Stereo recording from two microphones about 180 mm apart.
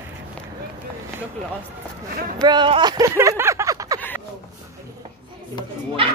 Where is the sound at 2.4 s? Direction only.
25° right (ahead or behind).